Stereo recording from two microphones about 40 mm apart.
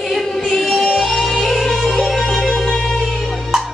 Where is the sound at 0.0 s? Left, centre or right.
Centre.